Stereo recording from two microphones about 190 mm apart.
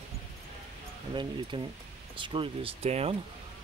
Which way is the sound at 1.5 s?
25° right (ahead or behind).